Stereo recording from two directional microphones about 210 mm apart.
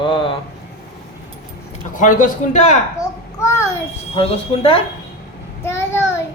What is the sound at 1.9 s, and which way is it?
Speech, 40° left (ahead or behind).